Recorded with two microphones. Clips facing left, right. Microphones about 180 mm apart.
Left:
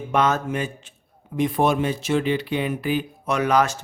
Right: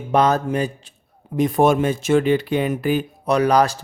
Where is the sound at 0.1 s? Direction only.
35° right (ahead or behind).